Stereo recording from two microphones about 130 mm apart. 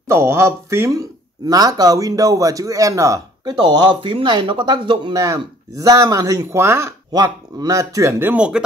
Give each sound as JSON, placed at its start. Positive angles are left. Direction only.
{"t": 0.1, "sound": "speech", "side_deg": -20}
{"t": 3.6, "sound": "speech", "side_deg": -35}